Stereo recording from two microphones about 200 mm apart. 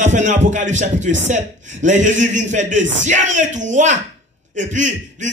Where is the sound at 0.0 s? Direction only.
35° right (ahead or behind).